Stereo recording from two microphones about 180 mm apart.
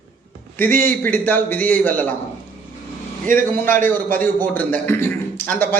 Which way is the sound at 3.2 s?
50° right (ahead or behind).